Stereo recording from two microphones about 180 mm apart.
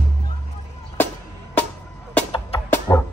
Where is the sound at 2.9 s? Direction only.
15° left (ahead or behind).